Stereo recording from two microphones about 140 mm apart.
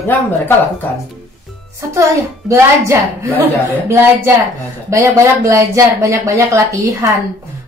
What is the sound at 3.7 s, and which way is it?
Speech, 20° right (ahead or behind).